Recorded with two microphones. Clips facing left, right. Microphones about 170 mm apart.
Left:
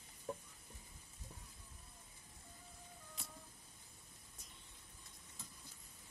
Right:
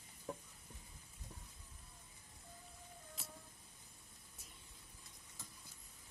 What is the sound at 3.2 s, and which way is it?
Cat, 5° right (ahead or behind).